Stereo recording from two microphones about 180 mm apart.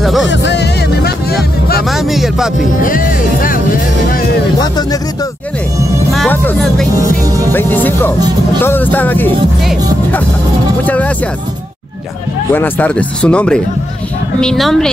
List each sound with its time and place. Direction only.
0.0 s speech: centre (ahead or behind)
0.3 s music: 75° left (ahead or behind); by 1.9 s 60° left (ahead or behind)
1.9 s speech: centre (ahead or behind)
2.8 s speech: 50° left (ahead or behind)
6.1 s speech: 5° left (ahead or behind)
7.5 s speech: 10° left (ahead or behind)
10.8 s speech: 10° left (ahead or behind)
12.5 s speech: 10° left (ahead or behind)